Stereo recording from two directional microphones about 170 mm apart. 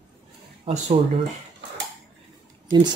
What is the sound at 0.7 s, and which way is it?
Speech, 30° right (ahead or behind).